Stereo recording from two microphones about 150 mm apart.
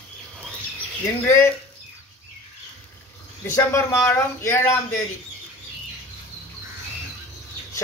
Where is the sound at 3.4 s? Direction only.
15° left (ahead or behind).